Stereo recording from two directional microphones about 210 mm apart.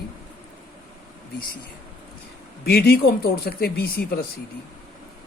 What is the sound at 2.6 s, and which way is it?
A man's voice, 45° left (ahead or behind).